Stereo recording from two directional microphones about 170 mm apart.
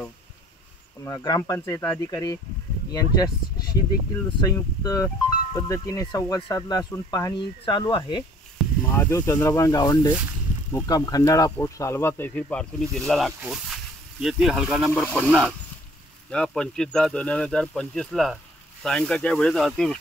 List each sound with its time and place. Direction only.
1.0 s speech: 20° left (ahead or behind)
4.4 s speech: 20° left (ahead or behind)
8.8 s speech: 15° left (ahead or behind)